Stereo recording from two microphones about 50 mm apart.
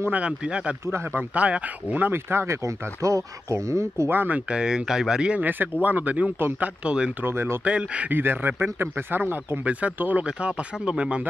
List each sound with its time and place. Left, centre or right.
0.1 s speech: right
2.0 s speech: right
4.1 s speech: right
4.5 s speech: centre
5.3 s speech: right
7.2 s speech: right
7.6 s speech: right
8.1 s speech: right
9.7 s speech: right
10.2 s speech: right